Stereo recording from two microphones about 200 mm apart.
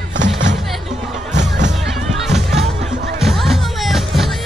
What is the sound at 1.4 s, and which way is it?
Music, 60° right (ahead or behind).